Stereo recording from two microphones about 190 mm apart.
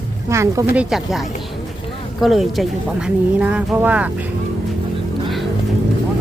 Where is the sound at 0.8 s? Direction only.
Centre (ahead or behind).